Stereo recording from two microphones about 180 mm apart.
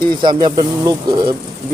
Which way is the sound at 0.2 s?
25° right (ahead or behind).